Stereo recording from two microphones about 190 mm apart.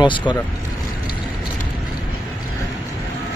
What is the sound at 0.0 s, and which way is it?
Speech, 25° left (ahead or behind).